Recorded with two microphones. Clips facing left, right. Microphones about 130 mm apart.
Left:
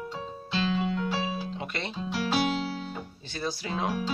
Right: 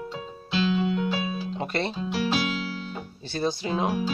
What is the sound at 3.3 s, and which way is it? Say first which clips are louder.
Speech: right 6 dB; 30° right (ahead or behind).